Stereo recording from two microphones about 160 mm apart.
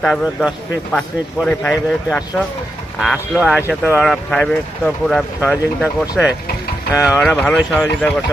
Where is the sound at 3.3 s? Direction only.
Centre (ahead or behind).